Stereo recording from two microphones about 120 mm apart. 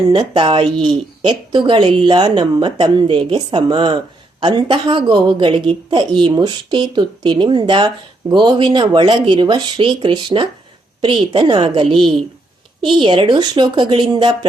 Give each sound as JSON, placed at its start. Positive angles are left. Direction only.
{"t": 0.1, "sound": "a woman's voice", "side_deg": -40}